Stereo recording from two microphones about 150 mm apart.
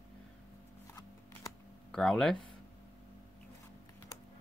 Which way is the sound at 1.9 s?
5° left (ahead or behind).